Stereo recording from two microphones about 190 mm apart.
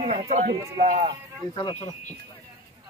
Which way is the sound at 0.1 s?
35° right (ahead or behind).